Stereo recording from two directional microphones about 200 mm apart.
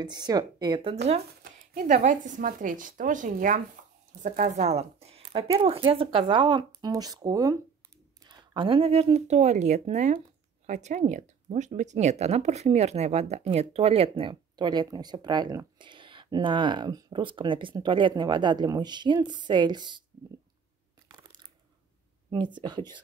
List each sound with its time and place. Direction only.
0.0 s speech: 20° right (ahead or behind)
1.4 s speech: 45° right (ahead or behind); by 20.0 s 20° right (ahead or behind)
22.3 s speech: 25° right (ahead or behind)